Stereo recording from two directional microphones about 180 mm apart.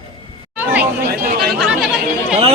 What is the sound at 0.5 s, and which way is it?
Chatter, 10° right (ahead or behind).